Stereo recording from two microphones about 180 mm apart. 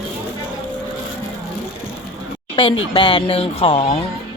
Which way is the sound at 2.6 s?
25° left (ahead or behind).